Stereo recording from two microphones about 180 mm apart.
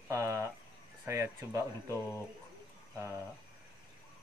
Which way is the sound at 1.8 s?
15° left (ahead or behind).